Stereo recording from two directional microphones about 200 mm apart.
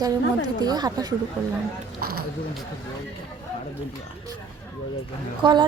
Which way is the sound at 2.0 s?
50° right (ahead or behind).